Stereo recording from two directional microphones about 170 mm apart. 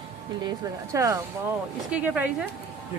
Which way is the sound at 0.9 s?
20° right (ahead or behind).